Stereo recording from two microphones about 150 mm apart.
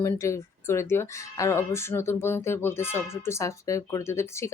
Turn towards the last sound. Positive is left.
turn(degrees=20)  # may be behind; listen again after turning